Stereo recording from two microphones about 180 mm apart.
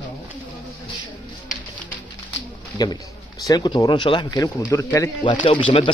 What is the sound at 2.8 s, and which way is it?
Speech, 20° left (ahead or behind).